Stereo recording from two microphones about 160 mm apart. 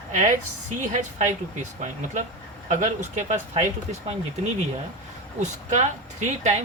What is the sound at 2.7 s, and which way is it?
Speech, 50° right (ahead or behind).